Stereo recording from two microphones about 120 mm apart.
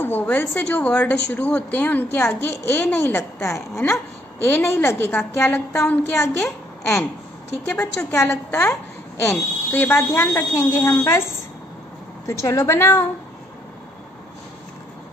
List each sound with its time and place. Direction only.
0.0 s a woman's voice: 15° left (ahead or behind)
7.7 s a woman's voice: 20° left (ahead or behind)
12.3 s speech: 25° left (ahead or behind)